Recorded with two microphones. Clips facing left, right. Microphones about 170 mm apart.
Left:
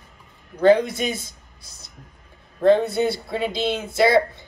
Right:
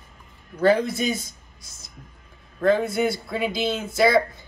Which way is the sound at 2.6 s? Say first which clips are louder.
Left 3 dB; 25° left (ahead or behind).